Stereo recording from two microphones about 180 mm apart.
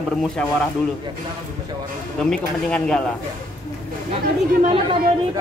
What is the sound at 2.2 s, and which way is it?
Speech, 5° left (ahead or behind).